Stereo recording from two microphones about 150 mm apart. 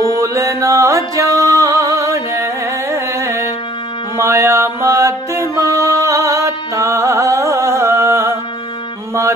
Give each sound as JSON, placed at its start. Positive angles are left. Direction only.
{"t": 0.0, "sound": "music", "side_deg": -20}